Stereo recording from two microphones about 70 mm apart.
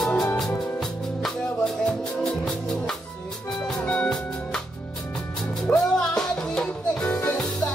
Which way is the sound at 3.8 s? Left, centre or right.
Centre.